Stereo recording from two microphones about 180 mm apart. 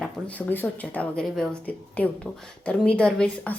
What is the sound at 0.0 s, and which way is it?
Speech, 10° left (ahead or behind).